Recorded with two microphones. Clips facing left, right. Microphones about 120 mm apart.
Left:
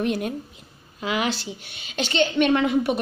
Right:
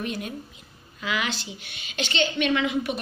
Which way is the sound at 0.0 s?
50° left (ahead or behind).